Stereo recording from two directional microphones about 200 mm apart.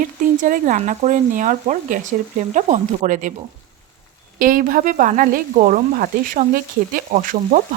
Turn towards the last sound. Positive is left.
turn(degrees=-40)  # may be behind; listen again after turning